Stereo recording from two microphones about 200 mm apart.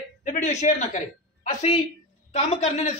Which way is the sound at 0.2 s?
40° left (ahead or behind).